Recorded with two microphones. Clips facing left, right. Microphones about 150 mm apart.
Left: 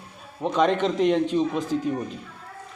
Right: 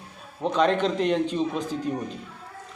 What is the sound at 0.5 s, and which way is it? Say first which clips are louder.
Speech: left 1 dB; 10° left (ahead or behind).